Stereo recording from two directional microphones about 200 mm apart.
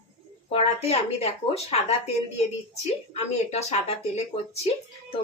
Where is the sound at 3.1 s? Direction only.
35° left (ahead or behind).